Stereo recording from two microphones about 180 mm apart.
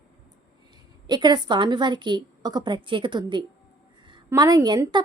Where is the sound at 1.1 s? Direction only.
25° right (ahead or behind).